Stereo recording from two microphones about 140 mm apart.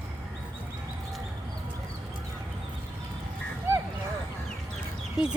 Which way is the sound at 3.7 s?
20° right (ahead or behind).